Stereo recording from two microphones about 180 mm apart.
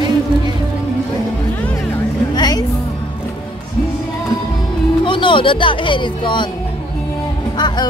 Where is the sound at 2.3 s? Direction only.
20° left (ahead or behind).